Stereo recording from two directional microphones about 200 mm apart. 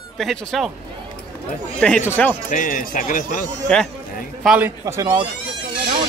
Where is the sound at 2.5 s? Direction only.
45° left (ahead or behind).